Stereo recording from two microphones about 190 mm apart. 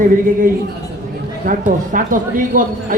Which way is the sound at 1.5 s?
45° right (ahead or behind).